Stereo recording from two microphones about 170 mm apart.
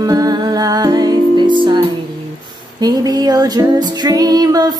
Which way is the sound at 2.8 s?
25° right (ahead or behind).